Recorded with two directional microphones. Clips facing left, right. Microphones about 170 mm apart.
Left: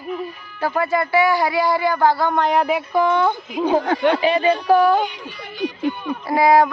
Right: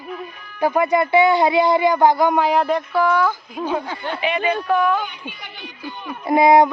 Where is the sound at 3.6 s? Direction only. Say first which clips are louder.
Left 6 dB; 10° left (ahead or behind).